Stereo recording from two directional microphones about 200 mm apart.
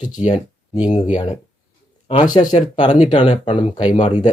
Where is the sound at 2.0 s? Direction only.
25° left (ahead or behind).